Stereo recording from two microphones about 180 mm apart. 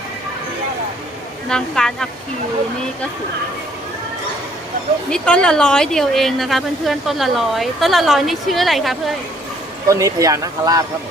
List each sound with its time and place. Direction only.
1.5 s speech: 5° left (ahead or behind)
5.1 s speech: 5° left (ahead or behind)
9.9 s speech: 20° right (ahead or behind)